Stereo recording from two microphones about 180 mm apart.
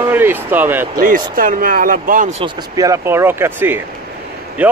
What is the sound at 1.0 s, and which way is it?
Speech, 50° right (ahead or behind).